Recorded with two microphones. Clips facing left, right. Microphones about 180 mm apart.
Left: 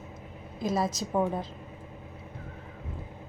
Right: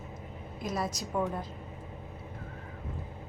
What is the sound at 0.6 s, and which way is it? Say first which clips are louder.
Speech: left 5 dB; 25° left (ahead or behind).